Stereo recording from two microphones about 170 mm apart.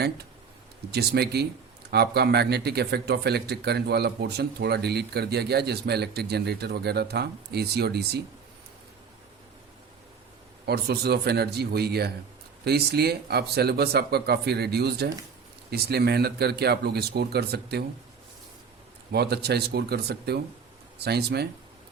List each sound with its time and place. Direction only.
0.9 s speech: 70° right (ahead or behind)
10.7 s speech: 70° right (ahead or behind)
19.1 s speech: 70° right (ahead or behind)